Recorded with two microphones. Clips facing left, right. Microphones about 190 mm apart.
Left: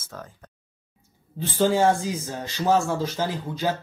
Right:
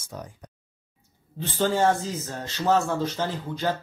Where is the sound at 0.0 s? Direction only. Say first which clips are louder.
Right 2 dB; 15° right (ahead or behind).